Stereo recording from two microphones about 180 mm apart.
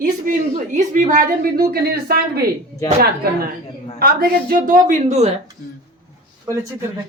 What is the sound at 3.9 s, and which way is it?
A woman's voice, 55° right (ahead or behind).